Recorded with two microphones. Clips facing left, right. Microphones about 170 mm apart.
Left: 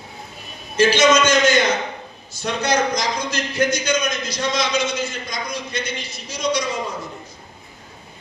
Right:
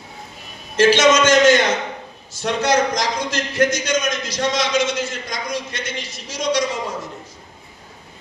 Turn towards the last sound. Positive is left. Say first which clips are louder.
# right 2 dB
turn(degrees=-90)